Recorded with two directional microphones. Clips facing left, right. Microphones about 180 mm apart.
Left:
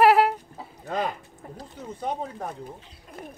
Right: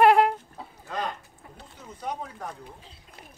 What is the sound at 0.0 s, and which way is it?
Chicken, 5° left (ahead or behind).